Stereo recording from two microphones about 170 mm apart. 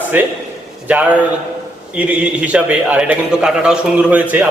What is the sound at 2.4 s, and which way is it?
A man's voice, 10° right (ahead or behind).